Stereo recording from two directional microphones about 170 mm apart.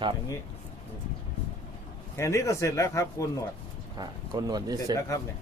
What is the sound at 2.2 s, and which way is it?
Speech, 15° left (ahead or behind).